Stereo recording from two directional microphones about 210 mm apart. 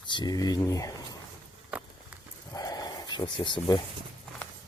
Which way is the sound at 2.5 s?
15° left (ahead or behind).